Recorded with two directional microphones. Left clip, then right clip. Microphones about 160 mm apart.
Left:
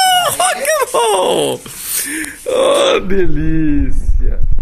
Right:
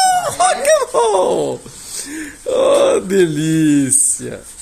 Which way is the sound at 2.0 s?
Centre (ahead or behind).